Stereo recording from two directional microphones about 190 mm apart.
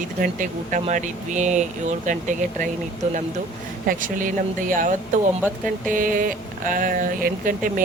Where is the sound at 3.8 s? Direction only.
45° right (ahead or behind).